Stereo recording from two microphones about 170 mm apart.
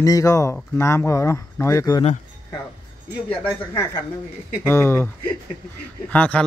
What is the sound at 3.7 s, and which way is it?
Speech, 20° left (ahead or behind).